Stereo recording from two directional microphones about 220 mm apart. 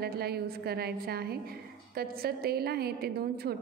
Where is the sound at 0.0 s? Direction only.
45° right (ahead or behind).